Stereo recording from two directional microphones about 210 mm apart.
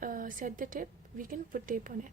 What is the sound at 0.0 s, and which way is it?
A woman's voice, 40° right (ahead or behind).